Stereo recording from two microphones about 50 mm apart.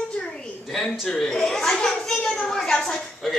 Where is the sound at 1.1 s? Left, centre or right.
Centre.